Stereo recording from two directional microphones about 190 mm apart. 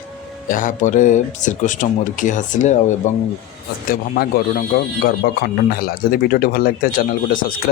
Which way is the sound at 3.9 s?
50° left (ahead or behind).